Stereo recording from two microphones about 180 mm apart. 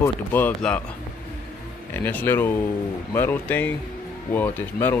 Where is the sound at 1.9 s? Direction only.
10° left (ahead or behind).